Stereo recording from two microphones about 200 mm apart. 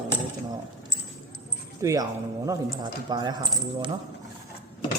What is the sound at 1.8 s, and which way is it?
Speech, 15° right (ahead or behind).